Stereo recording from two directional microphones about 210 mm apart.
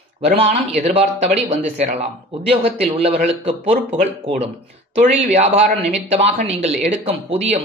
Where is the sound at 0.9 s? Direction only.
30° right (ahead or behind).